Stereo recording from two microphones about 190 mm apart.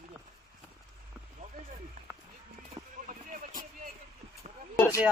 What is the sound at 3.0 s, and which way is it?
Vehicle, 45° right (ahead or behind).